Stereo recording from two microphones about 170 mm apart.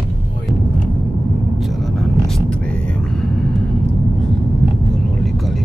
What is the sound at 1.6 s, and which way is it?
Vehicle, centre (ahead or behind).